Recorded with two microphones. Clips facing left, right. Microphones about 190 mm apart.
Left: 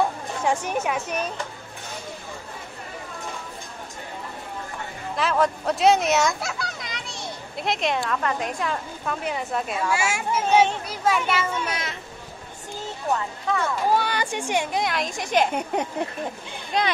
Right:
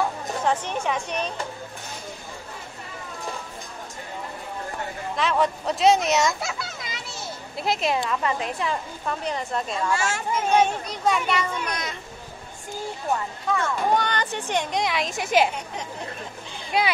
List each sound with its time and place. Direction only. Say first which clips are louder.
0.5 s a woman's voice: left 1 dB; 10° left (ahead or behind)
5.1 s a woman's voice: left 1 dB; centre (ahead or behind)
13.6 s a woman's voice: left 1 dB; 5° left (ahead or behind)
15.5 s speech: left 8 dB; 60° left (ahead or behind)
16.7 s speech: right 1 dB; 5° right (ahead or behind)